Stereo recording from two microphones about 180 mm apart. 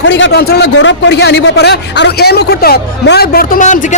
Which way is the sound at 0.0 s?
80° left.